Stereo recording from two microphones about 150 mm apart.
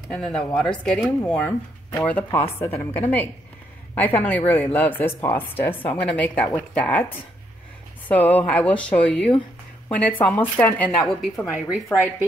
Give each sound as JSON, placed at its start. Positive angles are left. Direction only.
{"t": 0.1, "sound": "a woman's voice", "side_deg": 5}
{"t": 8.1, "sound": "a woman's voice", "side_deg": 10}
{"t": 11.9, "sound": "speech", "side_deg": 10}